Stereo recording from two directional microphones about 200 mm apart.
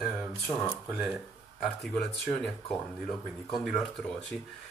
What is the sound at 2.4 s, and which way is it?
Speech, centre (ahead or behind).